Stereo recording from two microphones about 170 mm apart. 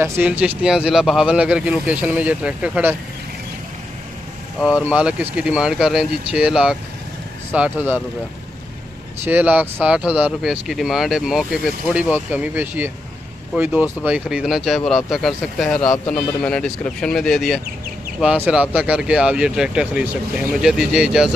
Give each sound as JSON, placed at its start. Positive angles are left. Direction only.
{"t": 0.0, "sound": "a man's voice", "side_deg": -10}
{"t": 4.6, "sound": "a man's voice", "side_deg": -5}
{"t": 9.2, "sound": "a man's voice", "side_deg": -10}